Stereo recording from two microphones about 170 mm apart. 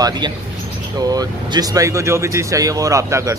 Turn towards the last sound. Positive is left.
turn(degrees=-15)  # may be behind; listen again after turning